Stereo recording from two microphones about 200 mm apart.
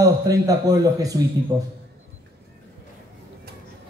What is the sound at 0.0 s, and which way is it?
A man's voice, 15° right (ahead or behind).